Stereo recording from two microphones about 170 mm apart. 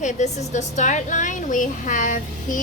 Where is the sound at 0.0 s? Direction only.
45° left (ahead or behind).